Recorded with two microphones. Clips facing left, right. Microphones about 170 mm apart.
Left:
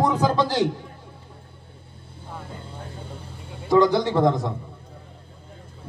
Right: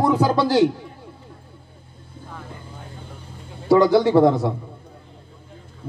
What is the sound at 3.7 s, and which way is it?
Speech, 10° right (ahead or behind).